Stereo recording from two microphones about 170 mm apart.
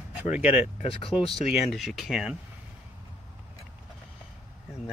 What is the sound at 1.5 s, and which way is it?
Speech, centre (ahead or behind).